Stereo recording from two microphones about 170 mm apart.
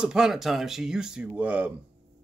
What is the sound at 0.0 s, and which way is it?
Speech, 5° right (ahead or behind).